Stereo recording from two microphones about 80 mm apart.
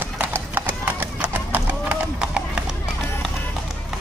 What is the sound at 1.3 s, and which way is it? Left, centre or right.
Run, right.